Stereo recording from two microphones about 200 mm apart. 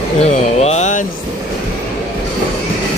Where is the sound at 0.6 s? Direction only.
35° left (ahead or behind).